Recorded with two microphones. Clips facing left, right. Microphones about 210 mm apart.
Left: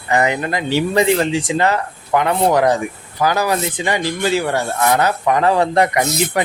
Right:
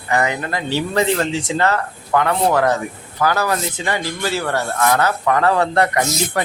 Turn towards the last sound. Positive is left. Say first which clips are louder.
# left 3 dB
turn(degrees=60)  # may be behind; listen again after turning